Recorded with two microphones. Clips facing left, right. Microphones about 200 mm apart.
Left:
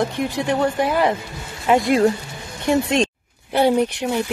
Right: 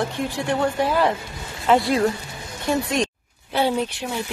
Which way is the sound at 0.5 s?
15° left (ahead or behind).